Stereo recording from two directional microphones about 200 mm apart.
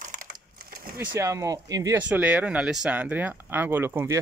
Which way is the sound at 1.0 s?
15° right (ahead or behind).